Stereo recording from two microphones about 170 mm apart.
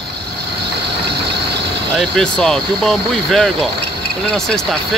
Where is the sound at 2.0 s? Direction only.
Centre (ahead or behind).